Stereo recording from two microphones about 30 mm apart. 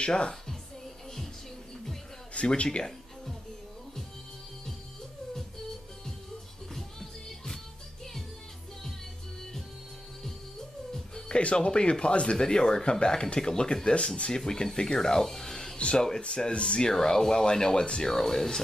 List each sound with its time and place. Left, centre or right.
2.5 s speech: left
10.9 s music: left
11.3 s speech: left
12.4 s speech: left
13.8 s speech: left; by 15.5 s centre
15.5 s music: left
15.8 s speech: left
17.0 s speech: left
18.0 s speech: centre